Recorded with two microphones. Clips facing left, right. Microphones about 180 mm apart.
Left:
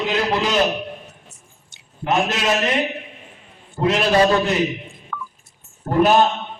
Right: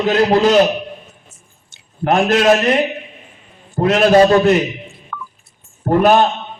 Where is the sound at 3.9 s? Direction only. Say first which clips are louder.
Right 8 dB; 50° right (ahead or behind).